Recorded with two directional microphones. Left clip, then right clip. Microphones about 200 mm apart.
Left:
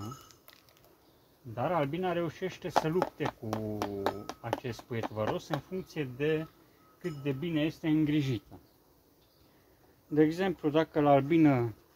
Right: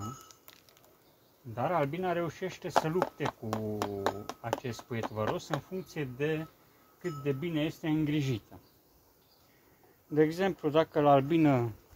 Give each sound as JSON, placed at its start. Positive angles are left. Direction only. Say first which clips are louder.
{"t": 0.0, "sound": "a sound", "louder": "right 2 dB", "side_deg": 0}
{"t": 1.5, "sound": "speech", "louder": "even", "side_deg": -5}
{"t": 10.1, "sound": "speech", "louder": "even", "side_deg": -20}